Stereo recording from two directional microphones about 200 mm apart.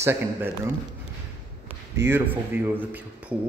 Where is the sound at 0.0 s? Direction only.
10° right (ahead or behind).